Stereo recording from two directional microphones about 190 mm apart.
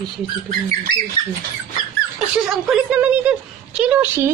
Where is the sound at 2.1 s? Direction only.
Centre (ahead or behind).